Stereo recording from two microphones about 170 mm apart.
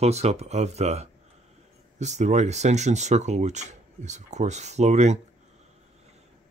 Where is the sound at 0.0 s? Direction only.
40° right (ahead or behind).